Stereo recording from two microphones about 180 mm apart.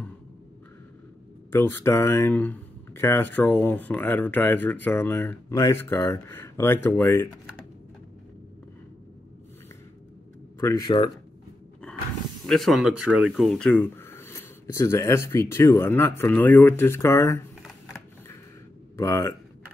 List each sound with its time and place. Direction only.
1.5 s speech: 15° left (ahead or behind)
10.6 s speech: 20° left (ahead or behind)
12.4 s speech: centre (ahead or behind)
18.9 s speech: 15° left (ahead or behind)